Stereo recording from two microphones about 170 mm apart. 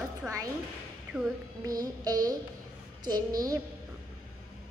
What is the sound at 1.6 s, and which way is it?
Female singing, 20° right (ahead or behind).